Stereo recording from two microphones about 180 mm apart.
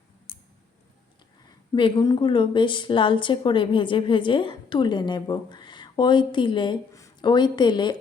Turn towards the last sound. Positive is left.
turn(degrees=25)  # may be behind; listen again after turning